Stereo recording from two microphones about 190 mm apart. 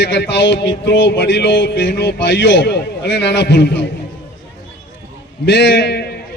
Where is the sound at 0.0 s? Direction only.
65° left (ahead or behind).